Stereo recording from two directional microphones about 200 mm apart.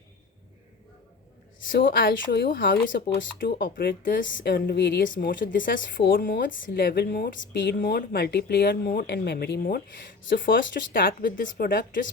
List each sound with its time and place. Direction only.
2.2 s speech: 55° left (ahead or behind)
2.8 s speech: 65° left (ahead or behind)
5.0 s speech: 45° left (ahead or behind)
6.0 s speech: 55° left (ahead or behind)
10.2 s speech: 65° left (ahead or behind)
10.5 s speech: 45° left (ahead or behind)